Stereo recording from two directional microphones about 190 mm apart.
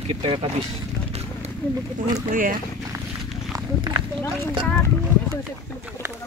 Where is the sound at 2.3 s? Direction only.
45° right (ahead or behind).